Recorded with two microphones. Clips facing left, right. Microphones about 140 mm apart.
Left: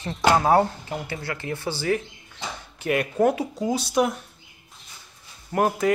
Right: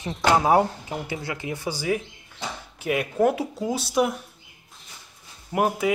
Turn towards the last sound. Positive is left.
turn(degrees=-10)  # may be behind; listen again after turning